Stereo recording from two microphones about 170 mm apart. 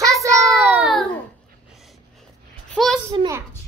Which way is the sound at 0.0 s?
20° right (ahead or behind).